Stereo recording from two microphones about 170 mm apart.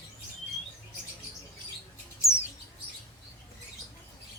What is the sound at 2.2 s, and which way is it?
Chirp, 15° left (ahead or behind).